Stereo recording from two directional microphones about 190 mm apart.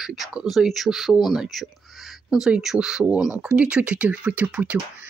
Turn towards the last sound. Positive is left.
turn(degrees=-10)  # may be behind; listen again after turning